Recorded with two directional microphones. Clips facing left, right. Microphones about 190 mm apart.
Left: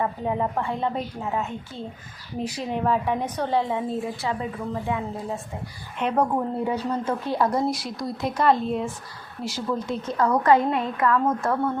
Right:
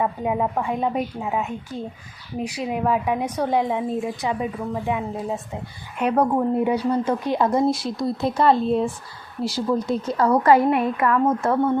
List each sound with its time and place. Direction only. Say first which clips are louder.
0.0 s a woman's voice: right 3 dB; 10° right (ahead or behind)